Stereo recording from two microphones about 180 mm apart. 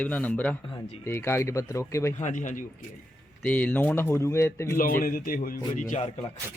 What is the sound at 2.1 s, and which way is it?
Speech, 45° left (ahead or behind).